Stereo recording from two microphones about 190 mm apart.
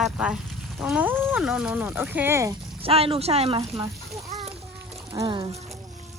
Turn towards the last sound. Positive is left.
turn(degrees=-20)  # may be behind; listen again after turning